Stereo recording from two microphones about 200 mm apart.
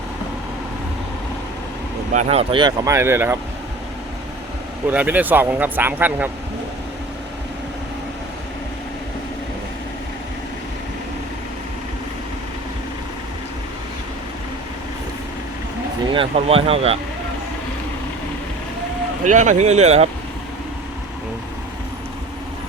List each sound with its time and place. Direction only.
2.1 s speech: 30° right (ahead or behind); by 3.3 s 15° right (ahead or behind)
4.9 s speech: 10° right (ahead or behind)
16.1 s speech: 30° right (ahead or behind)
19.2 s speech: 40° right (ahead or behind)